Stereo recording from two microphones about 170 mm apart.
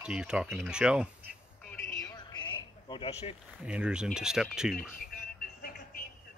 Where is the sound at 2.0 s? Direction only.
25° left (ahead or behind).